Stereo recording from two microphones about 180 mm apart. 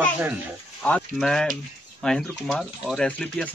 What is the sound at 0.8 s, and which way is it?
Speech, 5° left (ahead or behind).